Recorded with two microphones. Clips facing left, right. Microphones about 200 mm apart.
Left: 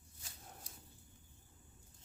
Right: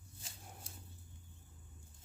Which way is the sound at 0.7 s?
25° right (ahead or behind).